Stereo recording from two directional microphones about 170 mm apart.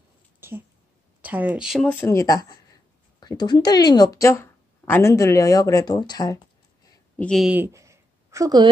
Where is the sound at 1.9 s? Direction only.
15° left (ahead or behind).